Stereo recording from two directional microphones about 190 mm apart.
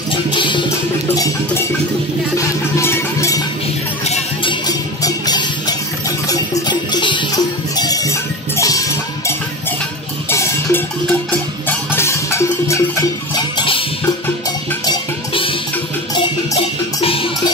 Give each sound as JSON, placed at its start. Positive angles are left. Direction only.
{"t": 0.1, "sound": "music", "side_deg": 25}
{"t": 1.1, "sound": "a sound", "side_deg": 20}
{"t": 2.3, "sound": "music", "side_deg": 15}
{"t": 4.0, "sound": "music", "side_deg": 35}
{"t": 4.6, "sound": "music", "side_deg": 20}
{"t": 10.3, "sound": "cowbell", "side_deg": 15}
{"t": 11.9, "sound": "music", "side_deg": 15}